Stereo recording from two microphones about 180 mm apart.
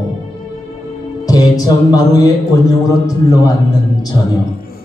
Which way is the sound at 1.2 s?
20° left (ahead or behind).